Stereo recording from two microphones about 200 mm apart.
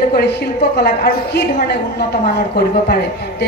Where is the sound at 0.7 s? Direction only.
55° left (ahead or behind).